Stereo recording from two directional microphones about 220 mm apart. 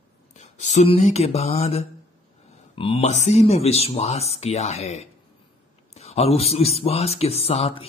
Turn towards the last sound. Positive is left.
turn(degrees=25)  # may be behind; listen again after turning